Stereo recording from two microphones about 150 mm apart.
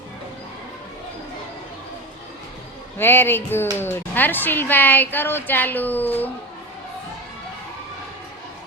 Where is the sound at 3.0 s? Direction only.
15° left (ahead or behind).